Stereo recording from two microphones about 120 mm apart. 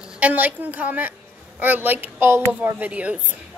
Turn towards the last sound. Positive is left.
turn(degrees=-10)  # may be behind; listen again after turning